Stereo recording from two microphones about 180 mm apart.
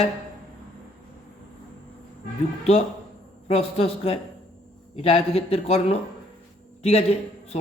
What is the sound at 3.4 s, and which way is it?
A man's voice, 35° left (ahead or behind).